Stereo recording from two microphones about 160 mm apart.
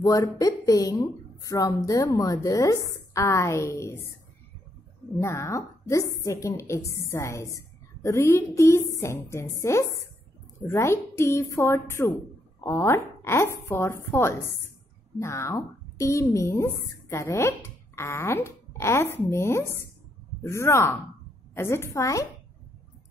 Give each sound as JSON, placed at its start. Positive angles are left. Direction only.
{"t": 0.0, "sound": "a woman's voice", "side_deg": 20}
{"t": 5.2, "sound": "speech", "side_deg": 20}